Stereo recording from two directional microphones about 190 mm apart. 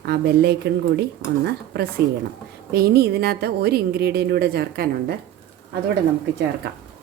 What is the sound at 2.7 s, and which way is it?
A woman's voice, 55° right (ahead or behind).